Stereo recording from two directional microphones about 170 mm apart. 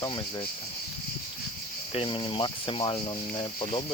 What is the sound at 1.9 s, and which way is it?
Speech, 30° left (ahead or behind).